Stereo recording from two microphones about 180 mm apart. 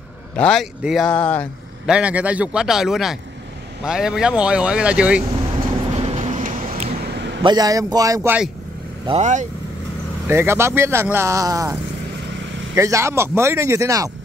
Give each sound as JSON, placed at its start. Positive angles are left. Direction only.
{"t": 0.4, "sound": "speech", "side_deg": 0}
{"t": 1.9, "sound": "speech", "side_deg": -5}
{"t": 5.9, "sound": "vehicle", "side_deg": -35}
{"t": 7.4, "sound": "speech", "side_deg": -20}
{"t": 9.2, "sound": "speech", "side_deg": -40}
{"t": 10.2, "sound": "speech", "side_deg": -15}